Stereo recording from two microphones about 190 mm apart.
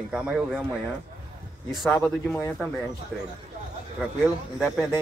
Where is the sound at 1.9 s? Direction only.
10° left (ahead or behind).